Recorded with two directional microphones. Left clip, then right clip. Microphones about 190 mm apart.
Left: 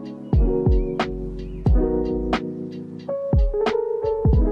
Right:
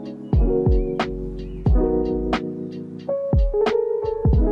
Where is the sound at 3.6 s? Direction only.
Centre (ahead or behind).